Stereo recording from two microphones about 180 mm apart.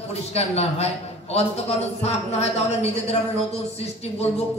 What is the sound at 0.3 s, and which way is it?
A man's voice, 35° left (ahead or behind).